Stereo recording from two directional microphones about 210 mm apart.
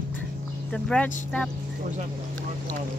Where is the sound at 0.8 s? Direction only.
5° left (ahead or behind).